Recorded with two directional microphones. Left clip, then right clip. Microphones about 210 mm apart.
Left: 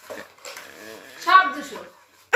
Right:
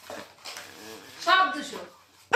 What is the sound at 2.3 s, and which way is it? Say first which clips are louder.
Dog: left 3 dB; centre (ahead or behind).